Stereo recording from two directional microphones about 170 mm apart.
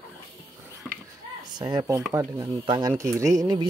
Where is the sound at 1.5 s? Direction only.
25° right (ahead or behind).